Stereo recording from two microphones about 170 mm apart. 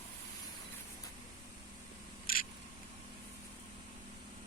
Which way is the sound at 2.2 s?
55° left (ahead or behind).